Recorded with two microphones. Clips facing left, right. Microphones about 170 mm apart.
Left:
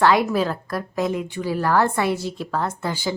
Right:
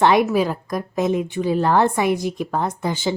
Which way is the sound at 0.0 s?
20° right (ahead or behind).